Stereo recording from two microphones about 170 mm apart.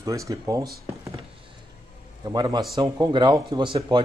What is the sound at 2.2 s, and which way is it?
Speech, 25° right (ahead or behind).